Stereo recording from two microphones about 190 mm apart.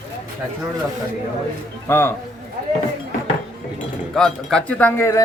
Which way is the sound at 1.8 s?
10° left (ahead or behind).